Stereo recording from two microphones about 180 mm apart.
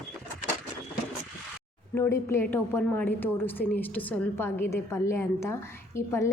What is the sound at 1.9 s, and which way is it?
A woman's voice, 15° left (ahead or behind).